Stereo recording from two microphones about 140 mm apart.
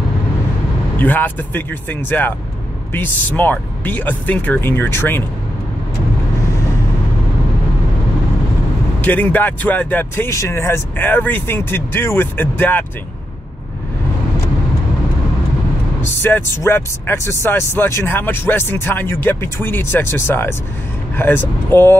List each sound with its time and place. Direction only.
0.9 s speech: 15° left (ahead or behind)
9.0 s speech: 10° left (ahead or behind)
16.0 s speech: 15° left (ahead or behind)